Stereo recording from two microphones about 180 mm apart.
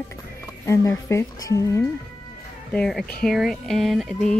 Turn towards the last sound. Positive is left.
turn(degrees=0)  # may be behind; listen again after turning